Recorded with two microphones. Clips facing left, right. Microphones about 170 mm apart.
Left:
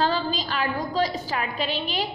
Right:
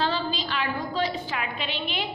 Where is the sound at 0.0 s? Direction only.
45° left (ahead or behind).